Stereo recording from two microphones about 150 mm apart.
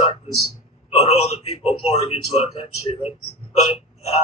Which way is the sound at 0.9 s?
45° left (ahead or behind).